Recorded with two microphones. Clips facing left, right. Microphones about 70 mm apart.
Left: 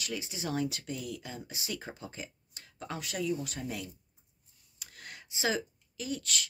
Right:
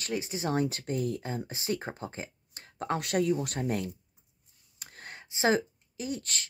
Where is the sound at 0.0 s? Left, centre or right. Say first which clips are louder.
Right 5 dB; right.